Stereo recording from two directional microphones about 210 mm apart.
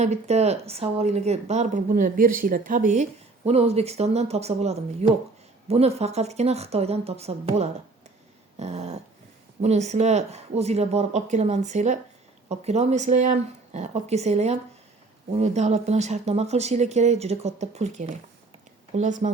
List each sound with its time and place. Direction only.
0.0 s a woman's voice: 30° right (ahead or behind)